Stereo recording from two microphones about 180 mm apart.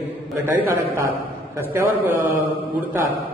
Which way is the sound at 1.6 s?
10° right (ahead or behind).